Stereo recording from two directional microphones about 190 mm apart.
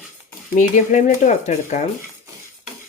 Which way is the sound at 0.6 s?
40° left (ahead or behind).